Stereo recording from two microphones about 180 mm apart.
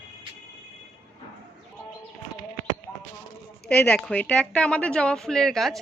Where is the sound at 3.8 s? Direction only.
5° left (ahead or behind).